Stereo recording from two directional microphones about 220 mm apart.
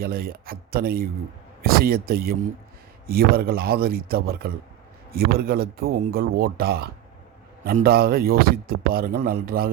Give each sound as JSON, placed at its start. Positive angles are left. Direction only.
{"t": 0.0, "sound": "speech", "side_deg": -45}